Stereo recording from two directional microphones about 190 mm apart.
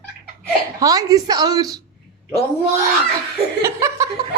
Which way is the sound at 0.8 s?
20° right (ahead or behind).